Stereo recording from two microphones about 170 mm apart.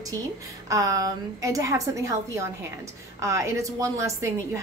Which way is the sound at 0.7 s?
20° right (ahead or behind).